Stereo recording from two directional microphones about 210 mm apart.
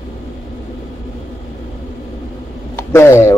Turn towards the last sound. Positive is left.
turn(degrees=10)  # may be behind; listen again after turning